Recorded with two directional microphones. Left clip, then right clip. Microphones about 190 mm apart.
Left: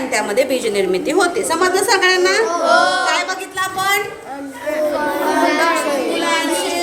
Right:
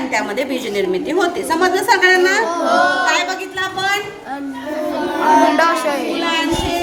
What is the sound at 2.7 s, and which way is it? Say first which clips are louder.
Speech: even; 50° left (ahead or behind).